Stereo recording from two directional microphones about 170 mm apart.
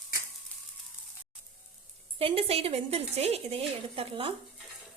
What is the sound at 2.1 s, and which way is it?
Speech, 35° right (ahead or behind).